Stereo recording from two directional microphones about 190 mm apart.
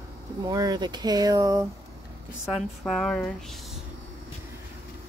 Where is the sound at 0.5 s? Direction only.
20° right (ahead or behind).